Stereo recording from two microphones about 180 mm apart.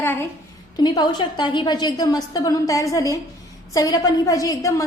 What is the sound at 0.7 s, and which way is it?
A woman's voice, 25° left (ahead or behind).